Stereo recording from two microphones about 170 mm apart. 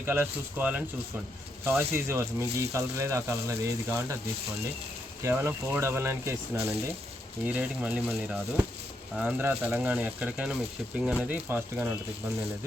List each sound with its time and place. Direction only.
0.0 s speech: 10° right (ahead or behind)
5.2 s speech: 15° right (ahead or behind)